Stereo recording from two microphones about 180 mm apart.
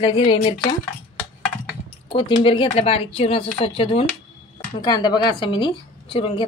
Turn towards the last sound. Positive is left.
turn(degrees=30)  # may be behind; listen again after turning